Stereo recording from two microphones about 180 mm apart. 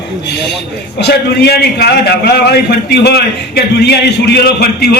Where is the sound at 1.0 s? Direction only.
65° left (ahead or behind).